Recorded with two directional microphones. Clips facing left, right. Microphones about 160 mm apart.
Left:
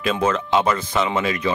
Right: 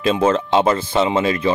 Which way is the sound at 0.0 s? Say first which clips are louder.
Right 4 dB; 30° right (ahead or behind).